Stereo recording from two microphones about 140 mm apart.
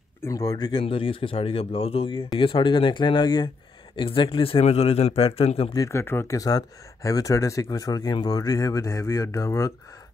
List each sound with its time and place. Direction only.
0.2 s a man's voice: 25° left (ahead or behind); by 5.7 s 45° left (ahead or behind)
5.7 s speech: 20° left (ahead or behind)